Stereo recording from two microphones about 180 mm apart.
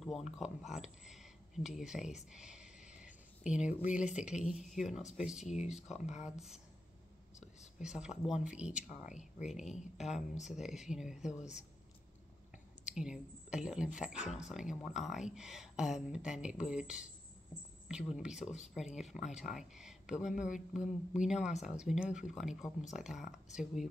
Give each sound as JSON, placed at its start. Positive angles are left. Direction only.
{"t": 0.0, "sound": "speech", "side_deg": 0}
{"t": 5.4, "sound": "speech", "side_deg": 40}
{"t": 7.8, "sound": "speech", "side_deg": -5}
{"t": 12.8, "sound": "speech", "side_deg": -5}